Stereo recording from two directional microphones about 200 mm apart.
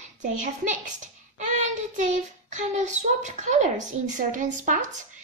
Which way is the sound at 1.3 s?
40° right (ahead or behind).